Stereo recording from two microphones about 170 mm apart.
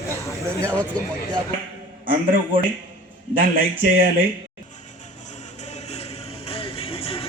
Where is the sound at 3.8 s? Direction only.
55° right (ahead or behind).